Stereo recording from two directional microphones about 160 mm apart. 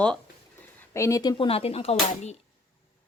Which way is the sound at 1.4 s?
35° left (ahead or behind).